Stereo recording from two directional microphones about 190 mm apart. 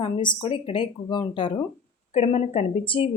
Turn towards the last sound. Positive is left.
turn(degrees=25)  # may be behind; listen again after turning